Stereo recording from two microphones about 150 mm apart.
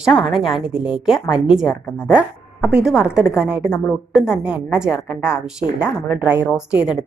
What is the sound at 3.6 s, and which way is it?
Speech, 15° left (ahead or behind).